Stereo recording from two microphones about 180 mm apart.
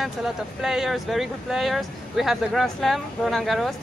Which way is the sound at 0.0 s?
5° right (ahead or behind).